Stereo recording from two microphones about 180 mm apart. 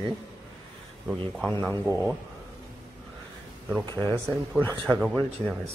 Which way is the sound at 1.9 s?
15° right (ahead or behind).